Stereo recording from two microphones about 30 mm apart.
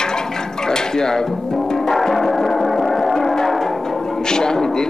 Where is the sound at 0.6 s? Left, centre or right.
Left.